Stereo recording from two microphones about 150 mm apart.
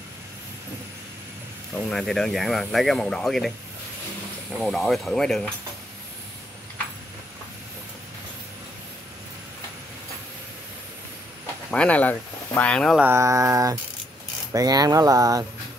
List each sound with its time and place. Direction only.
1.9 s speech: centre (ahead or behind)
11.7 s speech: 10° left (ahead or behind)
12.9 s speech: 15° right (ahead or behind)